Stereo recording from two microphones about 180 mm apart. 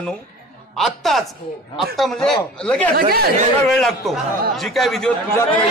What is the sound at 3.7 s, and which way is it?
A man's voice, centre (ahead or behind).